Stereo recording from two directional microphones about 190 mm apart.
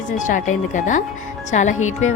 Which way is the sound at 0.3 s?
40° left (ahead or behind).